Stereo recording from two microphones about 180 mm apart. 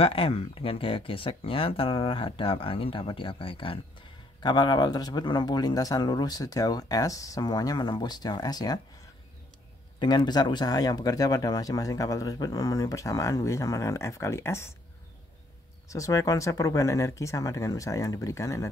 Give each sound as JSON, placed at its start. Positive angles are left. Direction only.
{"t": 0.0, "sound": "speech", "side_deg": 30}
{"t": 9.9, "sound": "speech", "side_deg": 25}
{"t": 15.9, "sound": "speech", "side_deg": 20}